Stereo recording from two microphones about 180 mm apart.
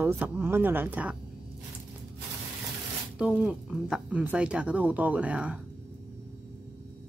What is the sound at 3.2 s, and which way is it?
Speech, 5° right (ahead or behind).